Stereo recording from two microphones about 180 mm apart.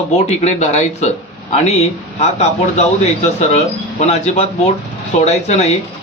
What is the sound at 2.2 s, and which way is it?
Speech, 35° left (ahead or behind).